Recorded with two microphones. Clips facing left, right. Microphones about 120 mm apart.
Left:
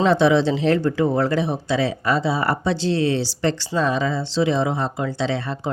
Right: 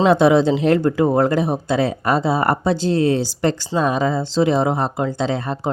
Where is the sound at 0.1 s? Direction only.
50° right (ahead or behind).